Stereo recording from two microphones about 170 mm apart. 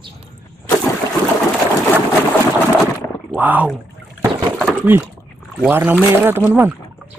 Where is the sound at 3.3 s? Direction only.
10° right (ahead or behind).